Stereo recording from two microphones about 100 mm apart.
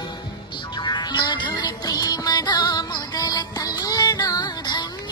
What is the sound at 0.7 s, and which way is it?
Music, 45° left (ahead or behind).